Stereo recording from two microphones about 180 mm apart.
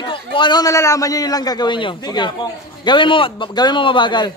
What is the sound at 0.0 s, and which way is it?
A man's voice, 30° left (ahead or behind).